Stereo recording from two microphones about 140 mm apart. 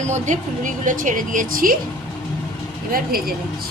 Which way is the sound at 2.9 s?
90° right.